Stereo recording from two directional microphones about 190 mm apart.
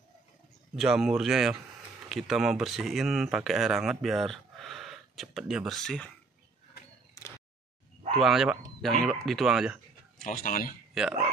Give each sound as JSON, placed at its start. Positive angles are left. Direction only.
{"t": 0.7, "sound": "speech", "side_deg": 0}
{"t": 7.2, "sound": "a sound", "side_deg": 15}
{"t": 8.2, "sound": "speech", "side_deg": 0}
{"t": 10.2, "sound": "speech", "side_deg": 45}